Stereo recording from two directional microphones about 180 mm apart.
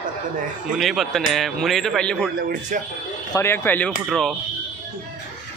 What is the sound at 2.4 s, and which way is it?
Speech, 50° right (ahead or behind).